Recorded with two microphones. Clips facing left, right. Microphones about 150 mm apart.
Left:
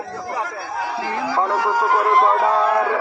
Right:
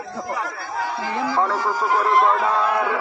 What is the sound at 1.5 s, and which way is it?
Speech, 70° left (ahead or behind).